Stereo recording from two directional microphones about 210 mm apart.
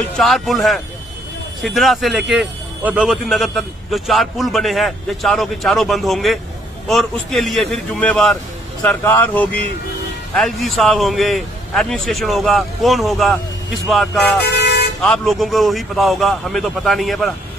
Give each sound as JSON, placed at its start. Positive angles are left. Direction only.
{"t": 0.2, "sound": "a man's voice", "side_deg": 0}
{"t": 14.4, "sound": "vehicle", "side_deg": 50}
{"t": 15.0, "sound": "a man's voice", "side_deg": 0}